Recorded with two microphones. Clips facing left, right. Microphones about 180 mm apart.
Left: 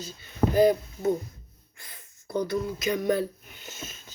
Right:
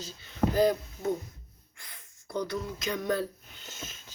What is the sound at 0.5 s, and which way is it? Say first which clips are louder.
Speech: left 5 dB; 10° left (ahead or behind).